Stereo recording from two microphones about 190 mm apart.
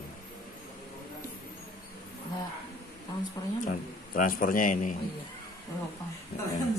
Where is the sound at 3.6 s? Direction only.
45° left (ahead or behind).